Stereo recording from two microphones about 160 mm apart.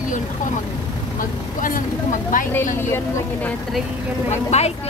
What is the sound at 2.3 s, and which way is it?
Speech, 55° left (ahead or behind).